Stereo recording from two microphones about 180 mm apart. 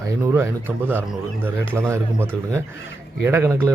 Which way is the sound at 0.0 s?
15° right (ahead or behind).